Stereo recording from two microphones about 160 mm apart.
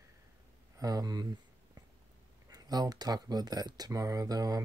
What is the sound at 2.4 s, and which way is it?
Speech, 25° right (ahead or behind).